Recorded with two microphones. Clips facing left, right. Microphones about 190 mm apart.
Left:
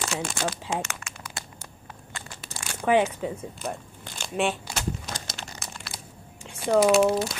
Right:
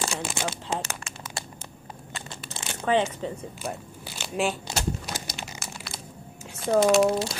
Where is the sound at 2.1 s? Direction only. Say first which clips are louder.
Right 2 dB; 25° right (ahead or behind).